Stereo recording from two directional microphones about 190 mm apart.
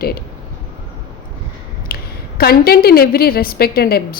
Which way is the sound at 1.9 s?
55° left (ahead or behind).